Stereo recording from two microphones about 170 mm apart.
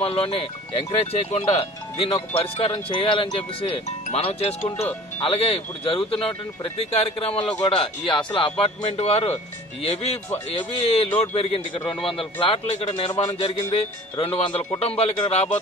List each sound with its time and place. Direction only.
0.0 s speech: 35° left (ahead or behind)
10.8 s speech: 35° left (ahead or behind)